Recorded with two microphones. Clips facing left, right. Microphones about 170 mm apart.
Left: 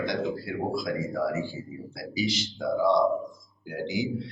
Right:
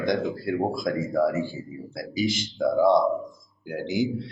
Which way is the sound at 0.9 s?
50° right (ahead or behind).